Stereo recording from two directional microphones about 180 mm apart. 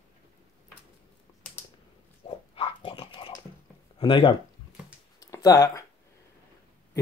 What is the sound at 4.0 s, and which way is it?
Speech, 25° left (ahead or behind).